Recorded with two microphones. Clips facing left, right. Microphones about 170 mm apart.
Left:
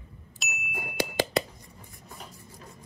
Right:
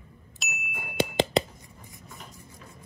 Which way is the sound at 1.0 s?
20° right (ahead or behind).